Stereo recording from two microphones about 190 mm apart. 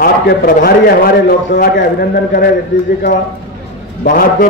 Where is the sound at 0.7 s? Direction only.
55° left (ahead or behind).